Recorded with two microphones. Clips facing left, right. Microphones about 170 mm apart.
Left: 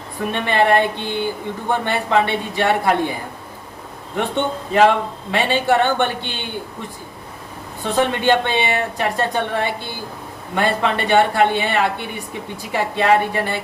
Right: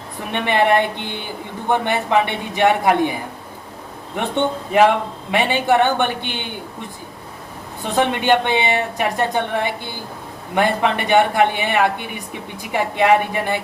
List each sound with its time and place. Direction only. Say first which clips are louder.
0.3 s a woman's voice: even; 15° right (ahead or behind)
4.2 s a woman's voice: right 1 dB; 15° right (ahead or behind)
7.9 s a woman's voice: even; 15° right (ahead or behind)